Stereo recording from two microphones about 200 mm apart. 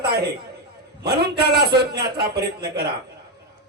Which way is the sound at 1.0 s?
55° right (ahead or behind).